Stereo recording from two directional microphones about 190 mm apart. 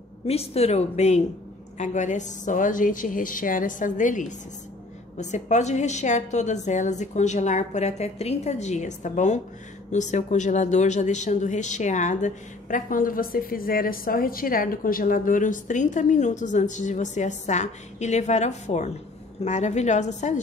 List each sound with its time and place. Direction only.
0.3 s a woman's voice: 30° left (ahead or behind)